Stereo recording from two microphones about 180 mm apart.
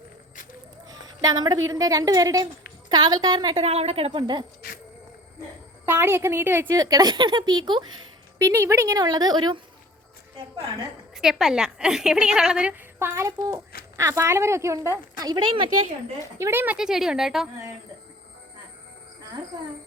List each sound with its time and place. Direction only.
0.9 s a sound: 20° right (ahead or behind)
1.6 s a woman's voice: 20° right (ahead or behind)
3.6 s speech: 35° right (ahead or behind)
5.8 s a woman's voice: 15° right (ahead or behind)
11.1 s a woman's voice: centre (ahead or behind); by 15.7 s 25° right (ahead or behind)
16.4 s a woman's voice: 10° right (ahead or behind)